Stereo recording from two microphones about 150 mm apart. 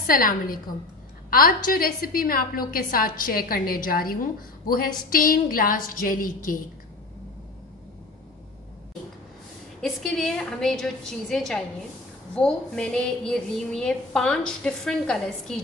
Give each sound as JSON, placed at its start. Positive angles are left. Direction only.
{"t": 0.0, "sound": "a woman's voice", "side_deg": 70}
{"t": 9.8, "sound": "a woman's voice", "side_deg": 0}